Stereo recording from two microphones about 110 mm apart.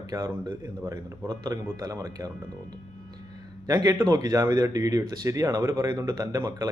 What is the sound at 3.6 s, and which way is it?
Speech, 35° right (ahead or behind).